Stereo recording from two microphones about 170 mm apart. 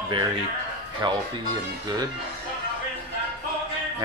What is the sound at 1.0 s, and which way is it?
Speech, 25° right (ahead or behind).